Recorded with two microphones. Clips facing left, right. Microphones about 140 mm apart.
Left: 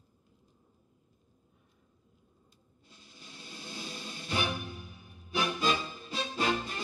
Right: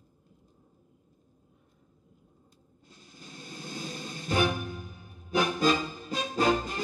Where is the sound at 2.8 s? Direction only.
45° right (ahead or behind).